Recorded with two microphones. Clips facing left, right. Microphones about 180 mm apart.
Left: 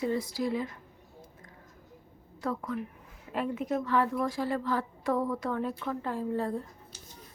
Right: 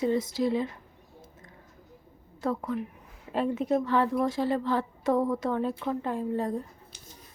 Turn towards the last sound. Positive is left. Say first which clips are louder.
# right 2 dB
turn(degrees=-20)  # may be behind; listen again after turning